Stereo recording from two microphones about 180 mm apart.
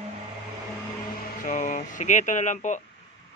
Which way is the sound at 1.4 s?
45° left (ahead or behind).